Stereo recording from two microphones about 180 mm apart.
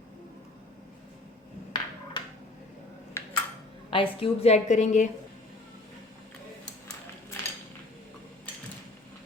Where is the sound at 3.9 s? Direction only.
30° left (ahead or behind).